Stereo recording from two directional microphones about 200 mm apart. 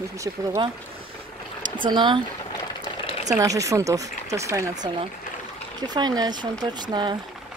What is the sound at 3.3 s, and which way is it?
Speech, 15° right (ahead or behind).